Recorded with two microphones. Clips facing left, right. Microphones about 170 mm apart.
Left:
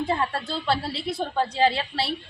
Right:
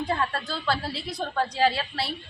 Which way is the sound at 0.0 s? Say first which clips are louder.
Left 2 dB; 25° left (ahead or behind).